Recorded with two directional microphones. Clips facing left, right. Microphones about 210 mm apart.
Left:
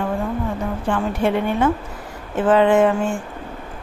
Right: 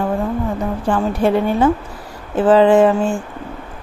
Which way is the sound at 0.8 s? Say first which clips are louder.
Right 4 dB; 35° right (ahead or behind).